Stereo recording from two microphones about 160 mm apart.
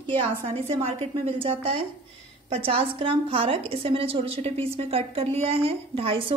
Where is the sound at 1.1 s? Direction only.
35° right (ahead or behind).